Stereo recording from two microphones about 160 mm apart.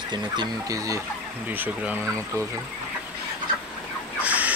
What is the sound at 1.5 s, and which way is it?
Speech, 10° right (ahead or behind).